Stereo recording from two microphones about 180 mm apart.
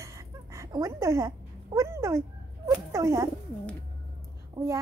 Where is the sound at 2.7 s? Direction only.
15° right (ahead or behind).